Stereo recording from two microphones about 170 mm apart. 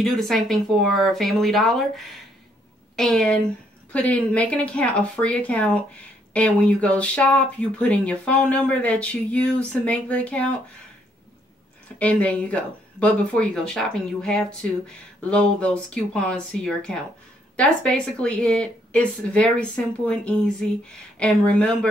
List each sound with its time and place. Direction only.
0.0 s speech: centre (ahead or behind)
12.0 s speech: 5° left (ahead or behind)